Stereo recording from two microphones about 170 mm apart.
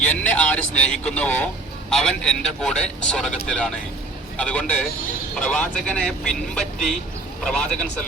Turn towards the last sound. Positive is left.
turn(degrees=5)  # may be behind; listen again after turning